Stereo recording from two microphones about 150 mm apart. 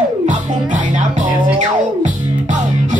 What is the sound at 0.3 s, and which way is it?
Music, 55° right (ahead or behind).